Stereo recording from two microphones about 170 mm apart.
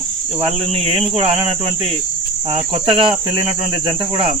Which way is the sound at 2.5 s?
30° right (ahead or behind).